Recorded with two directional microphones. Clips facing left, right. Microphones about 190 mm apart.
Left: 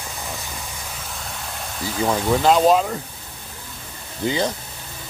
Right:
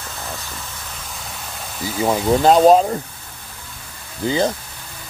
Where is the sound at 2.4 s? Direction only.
35° right (ahead or behind).